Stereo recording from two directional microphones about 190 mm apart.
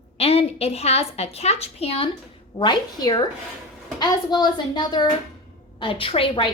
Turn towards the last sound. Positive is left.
turn(degrees=30)  # may be behind; listen again after turning